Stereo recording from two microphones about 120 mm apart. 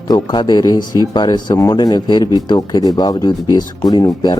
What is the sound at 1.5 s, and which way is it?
Speech, 25° left (ahead or behind).